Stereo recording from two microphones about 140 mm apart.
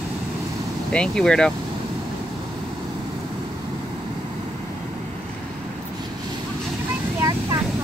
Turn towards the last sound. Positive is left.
turn(degrees=-25)  # may be behind; listen again after turning